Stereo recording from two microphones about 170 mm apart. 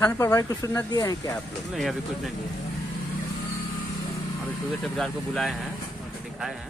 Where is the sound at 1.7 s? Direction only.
Centre (ahead or behind).